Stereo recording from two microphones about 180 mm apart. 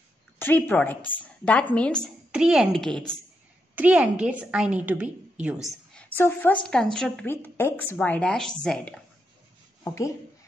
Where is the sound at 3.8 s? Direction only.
5° right (ahead or behind).